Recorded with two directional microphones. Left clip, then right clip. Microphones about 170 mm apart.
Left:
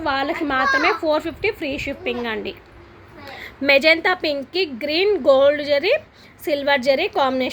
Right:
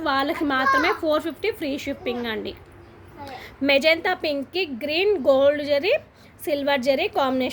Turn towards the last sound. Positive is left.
turn(degrees=0)  # may be behind; listen again after turning